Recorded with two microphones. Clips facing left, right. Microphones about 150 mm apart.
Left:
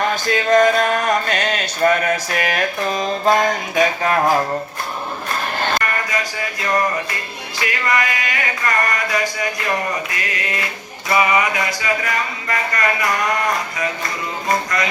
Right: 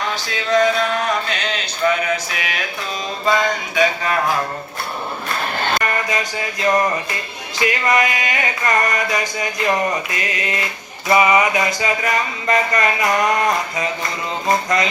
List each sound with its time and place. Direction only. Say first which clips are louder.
0.1 s a sound: left 4 dB; 50° left (ahead or behind)
5.8 s speech: right 2 dB; 20° right (ahead or behind)
7.6 s music: right 3 dB; 20° right (ahead or behind)
14.4 s speech: right 3 dB; 20° right (ahead or behind)